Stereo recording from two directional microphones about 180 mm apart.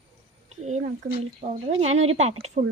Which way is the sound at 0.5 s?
40° right (ahead or behind).